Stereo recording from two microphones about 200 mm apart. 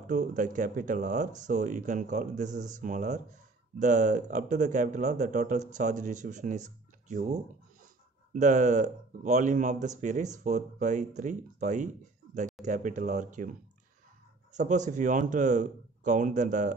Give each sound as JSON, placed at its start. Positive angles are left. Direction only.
{"t": 0.0, "sound": "speech", "side_deg": -40}
{"t": 14.5, "sound": "speech", "side_deg": -35}